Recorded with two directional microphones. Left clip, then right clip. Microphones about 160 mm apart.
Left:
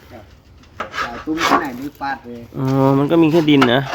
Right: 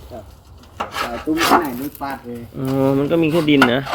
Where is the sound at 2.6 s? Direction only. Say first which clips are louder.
Left 2 dB; 35° left (ahead or behind).